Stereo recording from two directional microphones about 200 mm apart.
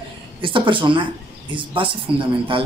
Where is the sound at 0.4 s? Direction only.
25° right (ahead or behind).